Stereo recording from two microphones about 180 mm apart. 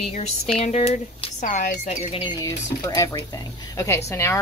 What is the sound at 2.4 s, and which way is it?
Speech, 15° left (ahead or behind).